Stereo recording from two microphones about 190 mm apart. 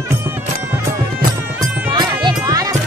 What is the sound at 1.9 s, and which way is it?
Music, 20° right (ahead or behind).